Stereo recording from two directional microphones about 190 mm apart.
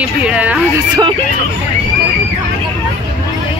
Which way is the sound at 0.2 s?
5° right (ahead or behind).